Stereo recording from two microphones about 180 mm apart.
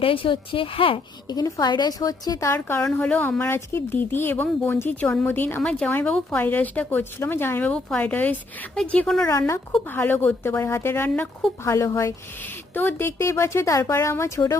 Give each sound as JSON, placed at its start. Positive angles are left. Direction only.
{"t": 0.0, "sound": "a woman's voice", "side_deg": 30}